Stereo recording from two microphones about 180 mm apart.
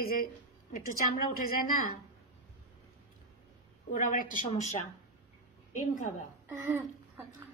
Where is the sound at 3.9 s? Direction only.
45° left (ahead or behind).